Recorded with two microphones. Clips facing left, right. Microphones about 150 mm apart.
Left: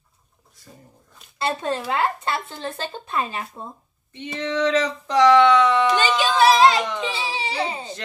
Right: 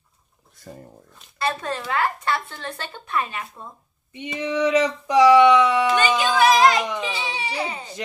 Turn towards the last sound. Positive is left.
turn(degrees=30)  # may be behind; listen again after turning